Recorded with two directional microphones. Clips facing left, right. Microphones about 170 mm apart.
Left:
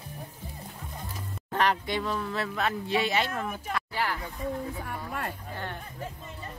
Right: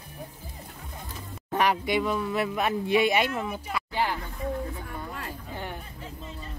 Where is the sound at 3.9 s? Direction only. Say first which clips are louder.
Right 4 dB; 20° right (ahead or behind).